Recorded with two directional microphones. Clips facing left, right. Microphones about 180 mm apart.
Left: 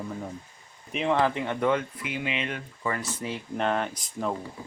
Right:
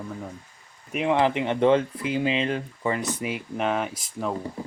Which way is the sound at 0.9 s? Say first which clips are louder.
Right 3 dB; 10° right (ahead or behind).